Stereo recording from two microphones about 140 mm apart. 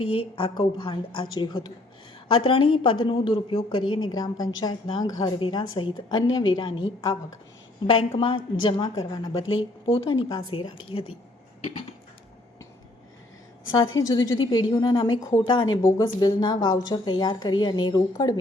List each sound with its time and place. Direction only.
0.3 s a woman's voice: 40° left (ahead or behind)
4.1 s a woman's voice: 30° left (ahead or behind)
9.8 s a woman's voice: 40° left (ahead or behind)
13.7 s a woman's voice: 30° left (ahead or behind)